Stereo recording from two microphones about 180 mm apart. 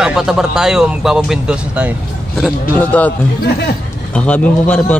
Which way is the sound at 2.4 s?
10° left (ahead or behind).